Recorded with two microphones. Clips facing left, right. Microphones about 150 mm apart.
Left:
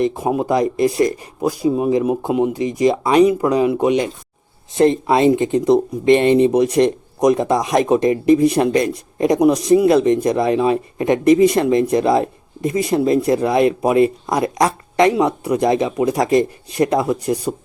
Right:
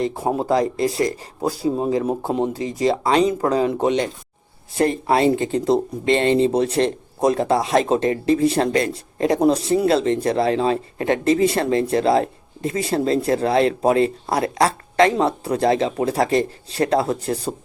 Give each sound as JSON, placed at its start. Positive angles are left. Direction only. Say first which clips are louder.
{"t": 0.0, "sound": "speech", "louder": "left 4 dB", "side_deg": 15}